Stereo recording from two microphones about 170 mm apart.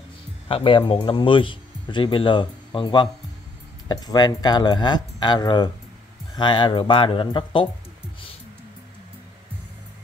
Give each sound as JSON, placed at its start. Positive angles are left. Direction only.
{"t": 0.5, "sound": "speech", "side_deg": 30}